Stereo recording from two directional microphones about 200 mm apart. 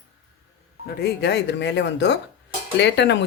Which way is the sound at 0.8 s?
55° left (ahead or behind).